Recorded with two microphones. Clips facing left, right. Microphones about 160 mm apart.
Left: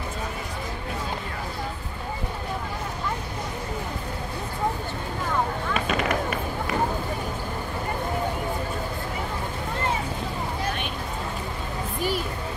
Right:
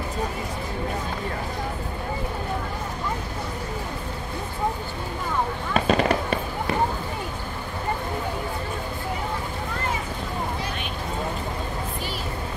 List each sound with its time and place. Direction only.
5.9 s fireworks: 35° right (ahead or behind)